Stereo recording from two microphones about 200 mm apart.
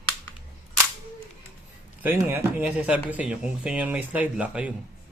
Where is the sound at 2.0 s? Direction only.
10° right (ahead or behind).